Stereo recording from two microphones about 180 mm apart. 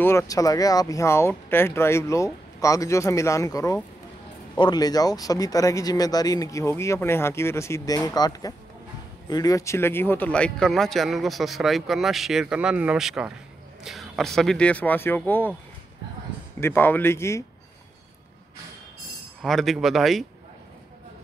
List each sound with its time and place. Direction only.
0.0 s speech: 15° left (ahead or behind)
16.5 s speech: 10° left (ahead or behind)
19.4 s speech: centre (ahead or behind)